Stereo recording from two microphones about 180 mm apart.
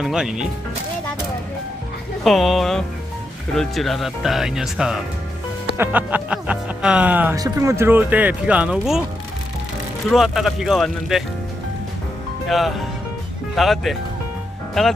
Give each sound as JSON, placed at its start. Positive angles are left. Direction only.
{"t": 0.0, "sound": "speech", "side_deg": -5}
{"t": 2.2, "sound": "speech", "side_deg": 0}
{"t": 10.1, "sound": "speech", "side_deg": 0}
{"t": 12.5, "sound": "speech", "side_deg": 0}